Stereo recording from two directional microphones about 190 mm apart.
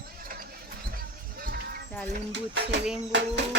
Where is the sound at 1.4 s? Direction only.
50° right (ahead or behind).